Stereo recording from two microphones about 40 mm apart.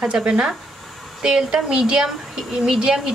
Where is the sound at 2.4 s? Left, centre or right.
Centre.